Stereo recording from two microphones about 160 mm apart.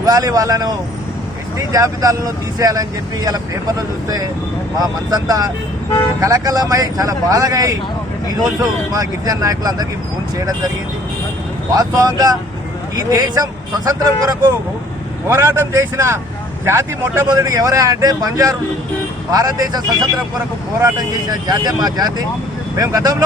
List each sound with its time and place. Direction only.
0.0 s speech: 25° right (ahead or behind)
11.7 s speech: 25° right (ahead or behind)